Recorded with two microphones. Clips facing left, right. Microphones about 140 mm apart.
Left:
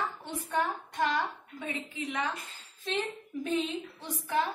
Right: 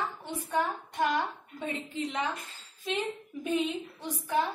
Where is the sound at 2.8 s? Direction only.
10° right (ahead or behind).